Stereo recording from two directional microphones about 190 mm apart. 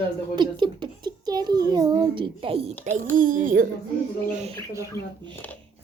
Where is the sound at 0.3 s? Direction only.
25° right (ahead or behind).